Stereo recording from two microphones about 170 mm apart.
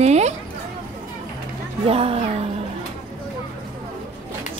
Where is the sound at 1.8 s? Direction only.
35° right (ahead or behind).